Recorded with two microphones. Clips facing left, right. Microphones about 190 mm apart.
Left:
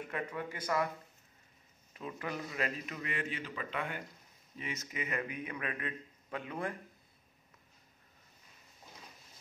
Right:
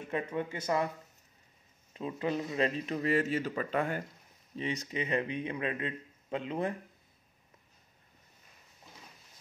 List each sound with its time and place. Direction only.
0.0 s a man's voice: 25° right (ahead or behind)
2.0 s speech: 25° right (ahead or behind); by 4.0 s 40° right (ahead or behind)
4.6 s a man's voice: 30° right (ahead or behind)